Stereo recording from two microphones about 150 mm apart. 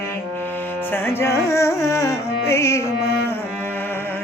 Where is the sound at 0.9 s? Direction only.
15° left (ahead or behind).